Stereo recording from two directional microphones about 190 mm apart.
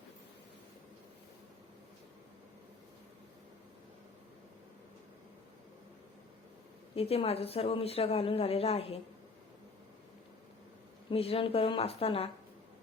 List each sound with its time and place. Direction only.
6.9 s speech: 30° left (ahead or behind)
11.1 s a woman's voice: 30° left (ahead or behind)